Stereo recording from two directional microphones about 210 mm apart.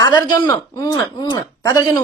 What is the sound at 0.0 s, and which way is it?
Speech, 15° left (ahead or behind).